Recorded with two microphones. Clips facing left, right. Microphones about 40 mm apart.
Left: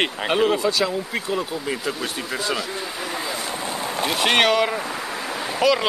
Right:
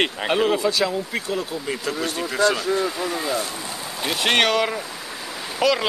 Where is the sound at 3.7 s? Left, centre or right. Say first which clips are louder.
Left 6 dB; left.